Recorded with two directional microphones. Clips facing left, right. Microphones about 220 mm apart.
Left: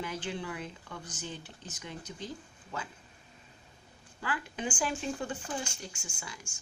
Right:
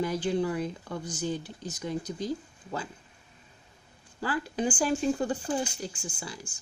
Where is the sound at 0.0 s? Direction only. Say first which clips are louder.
Right 9 dB; 40° right (ahead or behind).